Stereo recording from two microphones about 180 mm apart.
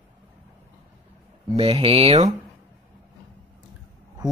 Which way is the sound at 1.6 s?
30° right (ahead or behind).